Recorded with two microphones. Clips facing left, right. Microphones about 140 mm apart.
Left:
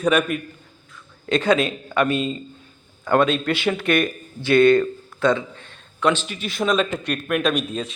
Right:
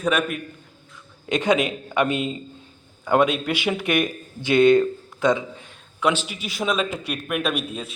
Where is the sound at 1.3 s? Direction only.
15° right (ahead or behind).